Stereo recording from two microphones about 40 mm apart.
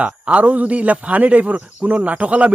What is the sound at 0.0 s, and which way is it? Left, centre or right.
Speech, right.